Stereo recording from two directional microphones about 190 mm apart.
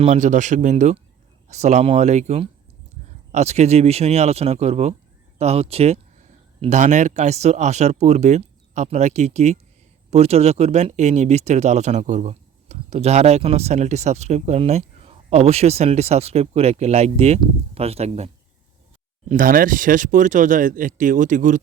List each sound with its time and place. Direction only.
0.0 s speech: 40° right (ahead or behind)
19.3 s speech: 45° right (ahead or behind)